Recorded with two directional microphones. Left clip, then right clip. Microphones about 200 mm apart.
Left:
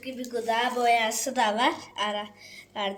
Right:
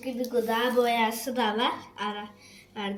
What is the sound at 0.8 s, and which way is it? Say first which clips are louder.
A woman's voice: left 1 dB; 60° left (ahead or behind).